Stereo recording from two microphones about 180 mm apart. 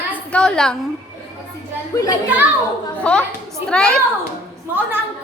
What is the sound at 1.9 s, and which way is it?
Speech, 20° left (ahead or behind).